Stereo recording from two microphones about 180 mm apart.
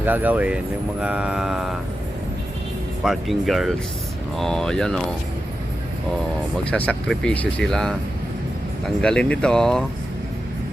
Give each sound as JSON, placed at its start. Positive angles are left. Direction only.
{"t": 0.0, "sound": "speech", "side_deg": -10}
{"t": 1.0, "sound": "mantra", "side_deg": -5}
{"t": 3.0, "sound": "speech", "side_deg": 0}
{"t": 6.7, "sound": "speech", "side_deg": 5}
{"t": 9.0, "sound": "speech", "side_deg": 5}